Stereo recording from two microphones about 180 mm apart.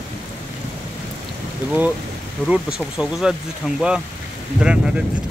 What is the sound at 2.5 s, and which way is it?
Speech, 5° right (ahead or behind).